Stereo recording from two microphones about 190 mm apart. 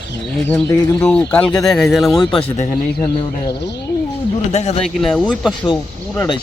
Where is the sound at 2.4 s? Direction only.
30° left (ahead or behind).